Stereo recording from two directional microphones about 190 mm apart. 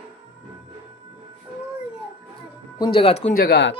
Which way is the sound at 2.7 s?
25° left (ahead or behind).